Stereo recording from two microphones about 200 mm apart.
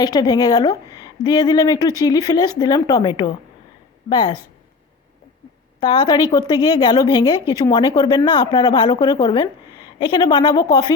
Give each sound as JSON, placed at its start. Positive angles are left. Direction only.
{"t": 0.0, "sound": "speech", "side_deg": 20}
{"t": 5.8, "sound": "speech", "side_deg": 20}